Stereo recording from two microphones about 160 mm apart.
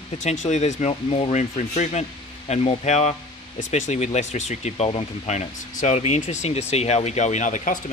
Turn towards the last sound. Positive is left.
turn(degrees=50)  # may be behind; listen again after turning